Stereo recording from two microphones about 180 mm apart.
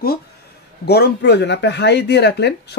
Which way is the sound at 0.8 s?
65° left (ahead or behind).